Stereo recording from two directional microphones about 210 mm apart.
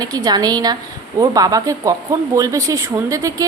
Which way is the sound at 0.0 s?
20° right (ahead or behind).